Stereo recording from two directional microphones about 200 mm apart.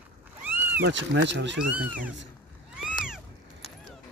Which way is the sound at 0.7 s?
60° right (ahead or behind).